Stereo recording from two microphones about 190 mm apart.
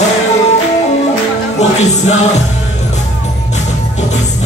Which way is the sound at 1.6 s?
35° left (ahead or behind).